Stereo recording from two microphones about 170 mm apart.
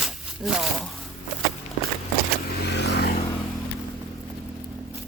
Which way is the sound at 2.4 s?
65° left (ahead or behind).